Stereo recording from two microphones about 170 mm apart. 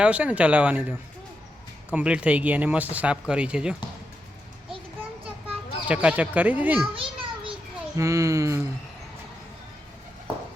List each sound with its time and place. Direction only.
0.0 s speech: 5° right (ahead or behind)
5.2 s children playing: 10° right (ahead or behind)
6.9 s children playing: 30° right (ahead or behind)
7.9 s speech: 20° right (ahead or behind)